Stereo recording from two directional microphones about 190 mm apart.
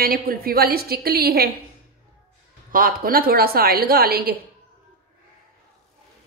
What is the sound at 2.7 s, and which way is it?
Speech, 50° right (ahead or behind).